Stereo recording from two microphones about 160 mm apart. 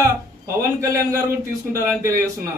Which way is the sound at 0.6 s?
20° right (ahead or behind).